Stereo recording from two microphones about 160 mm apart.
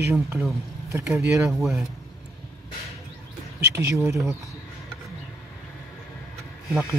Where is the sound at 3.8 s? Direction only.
15° right (ahead or behind).